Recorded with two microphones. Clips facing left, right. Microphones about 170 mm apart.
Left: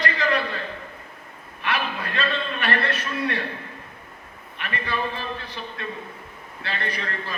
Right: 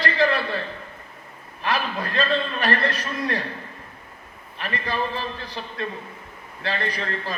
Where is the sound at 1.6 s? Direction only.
35° right (ahead or behind).